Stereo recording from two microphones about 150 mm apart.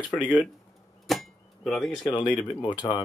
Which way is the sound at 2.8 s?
35° left (ahead or behind).